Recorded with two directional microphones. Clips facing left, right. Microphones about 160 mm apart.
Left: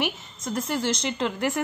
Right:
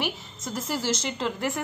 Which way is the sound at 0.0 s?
5° right (ahead or behind).